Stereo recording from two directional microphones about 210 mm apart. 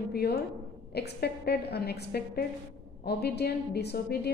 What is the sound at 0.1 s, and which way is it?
A woman's voice, 50° left (ahead or behind).